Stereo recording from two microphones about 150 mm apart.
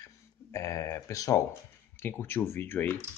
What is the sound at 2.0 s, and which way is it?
Speech, 15° left (ahead or behind).